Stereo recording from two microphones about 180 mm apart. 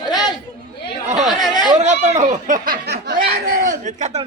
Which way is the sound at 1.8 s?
40° right (ahead or behind).